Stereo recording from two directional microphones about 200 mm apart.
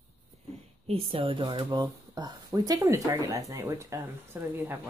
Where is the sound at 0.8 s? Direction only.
30° right (ahead or behind).